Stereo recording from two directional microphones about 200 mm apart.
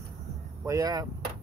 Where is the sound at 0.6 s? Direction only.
15° right (ahead or behind).